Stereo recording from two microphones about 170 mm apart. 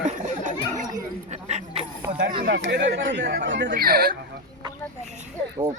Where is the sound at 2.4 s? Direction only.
80° right.